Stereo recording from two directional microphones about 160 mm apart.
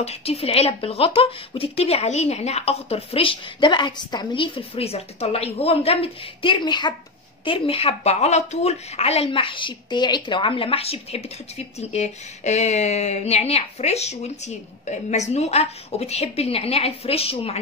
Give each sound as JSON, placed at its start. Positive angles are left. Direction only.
{"t": 0.0, "sound": "speech", "side_deg": 40}